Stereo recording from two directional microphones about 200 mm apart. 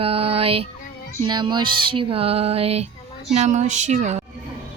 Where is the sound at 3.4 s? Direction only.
35° right (ahead or behind).